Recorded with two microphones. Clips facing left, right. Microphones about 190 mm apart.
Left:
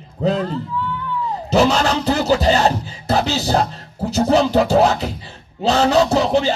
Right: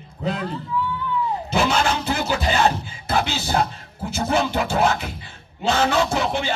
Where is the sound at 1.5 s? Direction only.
40° left (ahead or behind).